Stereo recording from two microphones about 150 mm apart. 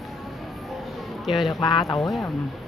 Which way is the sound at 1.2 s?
Centre (ahead or behind).